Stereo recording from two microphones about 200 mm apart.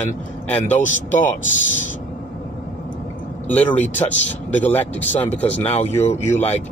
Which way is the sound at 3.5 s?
10° left (ahead or behind).